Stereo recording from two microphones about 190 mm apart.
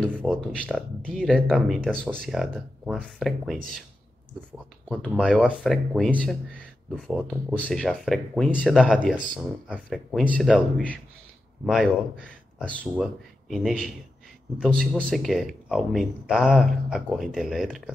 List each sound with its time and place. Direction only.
0.5 s speech: 5° left (ahead or behind)
5.0 s speech: 5° right (ahead or behind)